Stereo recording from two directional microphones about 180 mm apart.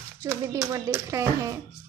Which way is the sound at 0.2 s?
20° right (ahead or behind).